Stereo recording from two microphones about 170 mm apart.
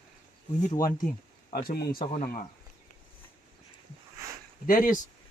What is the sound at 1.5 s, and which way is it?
Speech, 65° left (ahead or behind).